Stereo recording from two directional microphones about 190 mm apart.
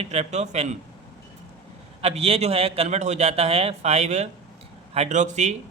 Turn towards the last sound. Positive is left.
turn(degrees=-40)  # may be behind; listen again after turning